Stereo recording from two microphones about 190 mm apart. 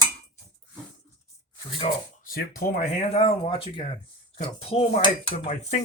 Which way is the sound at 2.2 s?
50° left (ahead or behind).